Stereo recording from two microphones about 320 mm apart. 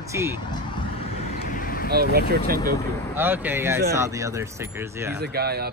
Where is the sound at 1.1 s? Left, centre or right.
Left.